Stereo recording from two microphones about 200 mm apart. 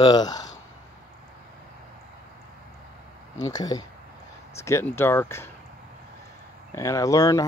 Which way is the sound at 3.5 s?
20° left (ahead or behind).